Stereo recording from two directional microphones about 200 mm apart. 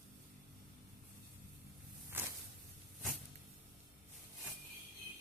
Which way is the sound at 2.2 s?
10° right (ahead or behind).